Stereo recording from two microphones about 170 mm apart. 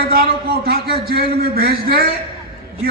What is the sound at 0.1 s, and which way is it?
A man's voice, 65° right (ahead or behind).